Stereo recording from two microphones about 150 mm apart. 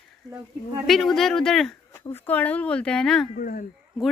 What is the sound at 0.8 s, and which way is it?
Speech, centre (ahead or behind).